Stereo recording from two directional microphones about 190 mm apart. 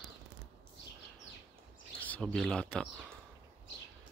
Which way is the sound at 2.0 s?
10° left (ahead or behind).